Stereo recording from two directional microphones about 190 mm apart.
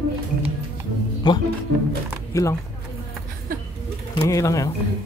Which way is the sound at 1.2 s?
25° left (ahead or behind).